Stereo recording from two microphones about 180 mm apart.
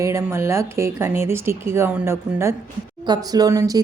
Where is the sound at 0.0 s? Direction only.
15° right (ahead or behind).